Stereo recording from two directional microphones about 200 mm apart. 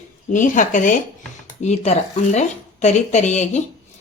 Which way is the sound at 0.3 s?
40° left (ahead or behind).